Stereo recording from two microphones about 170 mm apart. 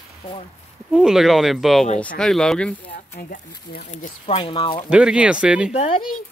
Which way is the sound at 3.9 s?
40° left (ahead or behind).